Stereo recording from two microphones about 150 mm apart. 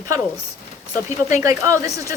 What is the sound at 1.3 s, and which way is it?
Speech, 20° right (ahead or behind).